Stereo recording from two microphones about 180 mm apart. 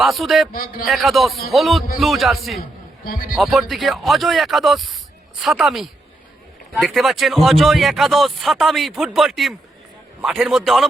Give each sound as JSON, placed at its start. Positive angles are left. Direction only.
{"t": 0.0, "sound": "speech", "side_deg": 0}
{"t": 0.5, "sound": "a man's voice", "side_deg": 55}
{"t": 0.9, "sound": "speech", "side_deg": 0}
{"t": 2.6, "sound": "a sound", "side_deg": 50}
{"t": 3.3, "sound": "speech", "side_deg": 0}